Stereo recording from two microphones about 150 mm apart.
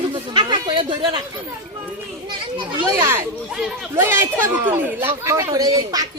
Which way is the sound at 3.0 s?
20° right (ahead or behind).